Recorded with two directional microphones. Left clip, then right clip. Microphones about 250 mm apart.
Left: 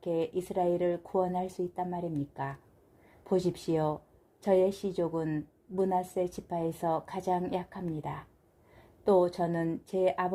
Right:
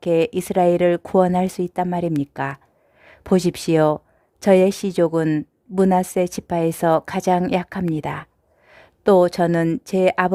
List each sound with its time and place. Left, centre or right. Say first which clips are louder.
0.3 s a woman's voice: right 12 dB; right